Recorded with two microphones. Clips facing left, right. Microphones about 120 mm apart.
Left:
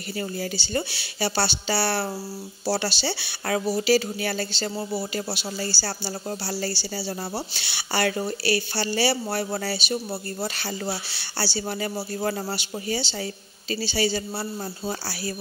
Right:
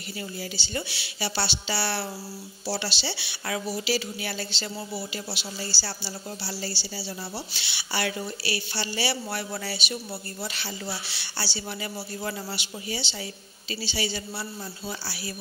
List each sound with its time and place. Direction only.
0.2 s speech: 45° left (ahead or behind)